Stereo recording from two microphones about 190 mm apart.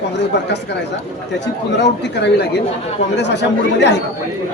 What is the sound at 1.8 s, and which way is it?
Speech, 65° left (ahead or behind).